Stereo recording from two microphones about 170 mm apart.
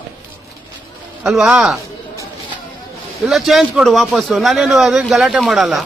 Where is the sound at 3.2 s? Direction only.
Centre (ahead or behind).